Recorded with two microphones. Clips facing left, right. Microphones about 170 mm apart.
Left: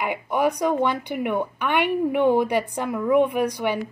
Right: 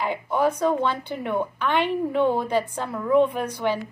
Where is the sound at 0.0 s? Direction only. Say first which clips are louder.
Even; 15° left (ahead or behind).